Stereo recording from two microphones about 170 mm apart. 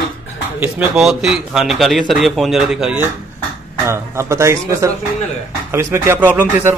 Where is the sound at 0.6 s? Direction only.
5° right (ahead or behind).